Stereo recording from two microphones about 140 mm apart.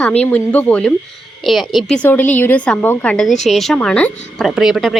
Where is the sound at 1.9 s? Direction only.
10° left (ahead or behind).